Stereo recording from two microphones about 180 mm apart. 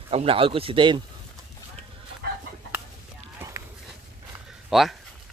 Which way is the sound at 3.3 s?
15° right (ahead or behind).